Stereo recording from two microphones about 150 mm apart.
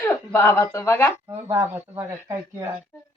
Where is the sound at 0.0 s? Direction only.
15° left (ahead or behind).